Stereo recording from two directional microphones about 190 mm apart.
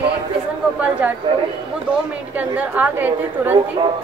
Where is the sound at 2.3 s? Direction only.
10° right (ahead or behind).